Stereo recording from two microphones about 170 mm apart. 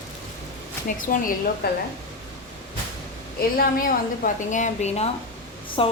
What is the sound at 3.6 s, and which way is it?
A woman's voice, 55° left (ahead or behind).